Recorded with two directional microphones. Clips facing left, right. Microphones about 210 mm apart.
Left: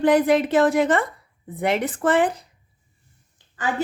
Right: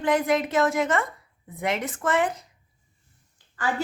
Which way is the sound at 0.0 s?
35° left (ahead or behind).